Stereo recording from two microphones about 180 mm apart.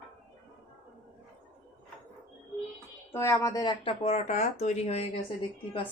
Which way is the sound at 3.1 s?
15° left (ahead or behind).